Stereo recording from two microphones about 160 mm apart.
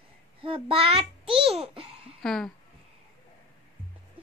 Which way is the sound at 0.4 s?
35° right (ahead or behind).